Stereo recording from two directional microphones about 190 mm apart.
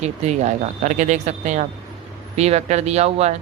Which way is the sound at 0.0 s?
35° right (ahead or behind).